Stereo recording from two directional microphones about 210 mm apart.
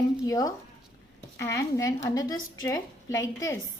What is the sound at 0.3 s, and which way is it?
A woman's voice, 15° left (ahead or behind).